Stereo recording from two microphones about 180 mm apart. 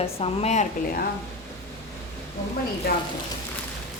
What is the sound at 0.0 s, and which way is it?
Speech, 35° left (ahead or behind).